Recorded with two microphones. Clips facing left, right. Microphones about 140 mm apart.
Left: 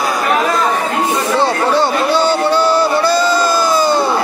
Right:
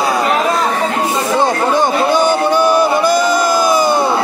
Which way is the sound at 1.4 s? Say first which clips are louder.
Even; 15° right (ahead or behind).